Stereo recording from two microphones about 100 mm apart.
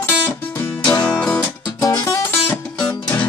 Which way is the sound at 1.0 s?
10° left (ahead or behind).